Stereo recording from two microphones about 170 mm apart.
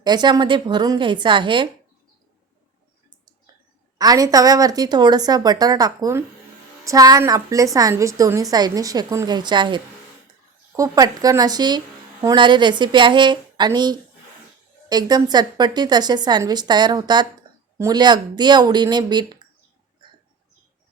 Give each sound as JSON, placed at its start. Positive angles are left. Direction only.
{"t": 0.0, "sound": "a woman's voice", "side_deg": -25}
{"t": 3.9, "sound": "a woman's voice", "side_deg": -20}
{"t": 20.0, "sound": "a sound", "side_deg": -30}